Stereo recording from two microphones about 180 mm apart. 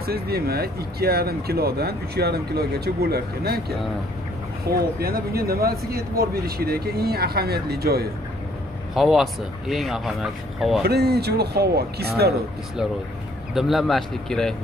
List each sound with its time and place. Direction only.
0.0 s speech: 60° right (ahead or behind)
8.9 s speech: centre (ahead or behind)
10.8 s speech: 60° right (ahead or behind)
13.6 s speech: centre (ahead or behind)